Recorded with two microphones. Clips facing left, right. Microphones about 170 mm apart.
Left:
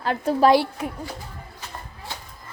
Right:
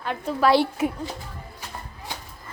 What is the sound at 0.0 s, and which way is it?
Speech, 35° left (ahead or behind).